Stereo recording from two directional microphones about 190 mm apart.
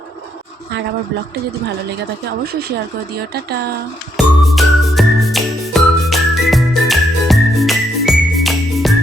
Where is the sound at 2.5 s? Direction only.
60° right (ahead or behind).